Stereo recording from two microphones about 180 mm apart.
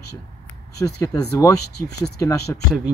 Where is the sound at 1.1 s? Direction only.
20° left (ahead or behind).